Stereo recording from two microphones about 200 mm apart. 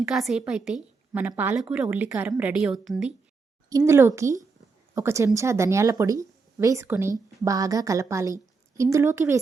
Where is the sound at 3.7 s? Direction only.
15° right (ahead or behind).